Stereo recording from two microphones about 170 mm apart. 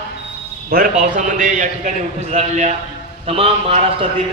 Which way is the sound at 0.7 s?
55° right (ahead or behind).